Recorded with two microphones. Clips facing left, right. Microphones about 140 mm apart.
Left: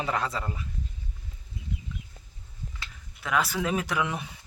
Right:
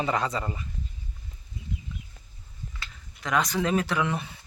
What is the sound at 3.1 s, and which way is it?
Speech, 5° left (ahead or behind).